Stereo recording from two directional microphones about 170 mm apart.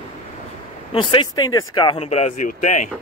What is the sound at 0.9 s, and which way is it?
Speech, 30° left (ahead or behind).